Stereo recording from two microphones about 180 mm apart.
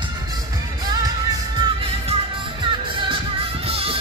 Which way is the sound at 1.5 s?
25° right (ahead or behind).